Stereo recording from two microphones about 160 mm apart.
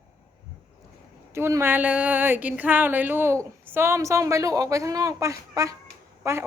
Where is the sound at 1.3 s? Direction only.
15° right (ahead or behind).